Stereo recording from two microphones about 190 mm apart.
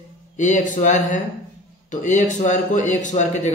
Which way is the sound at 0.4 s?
40° left (ahead or behind).